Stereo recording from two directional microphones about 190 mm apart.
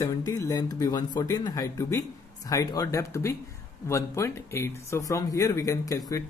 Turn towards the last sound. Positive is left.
turn(degrees=20)  # may be behind; listen again after turning